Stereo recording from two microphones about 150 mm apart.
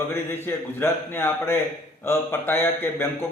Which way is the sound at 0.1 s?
15° left (ahead or behind).